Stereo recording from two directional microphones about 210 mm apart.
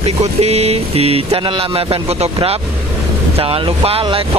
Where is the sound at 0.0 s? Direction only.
30° right (ahead or behind).